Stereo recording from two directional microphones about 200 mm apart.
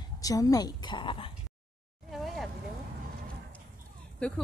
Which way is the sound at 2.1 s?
Centre (ahead or behind).